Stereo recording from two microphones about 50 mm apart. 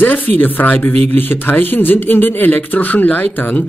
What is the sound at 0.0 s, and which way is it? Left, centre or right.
Speech, left.